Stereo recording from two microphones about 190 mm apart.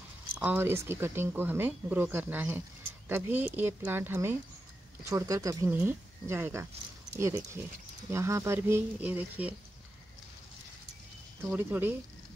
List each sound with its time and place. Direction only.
0.3 s speech: 10° right (ahead or behind)
11.5 s speech: 10° right (ahead or behind)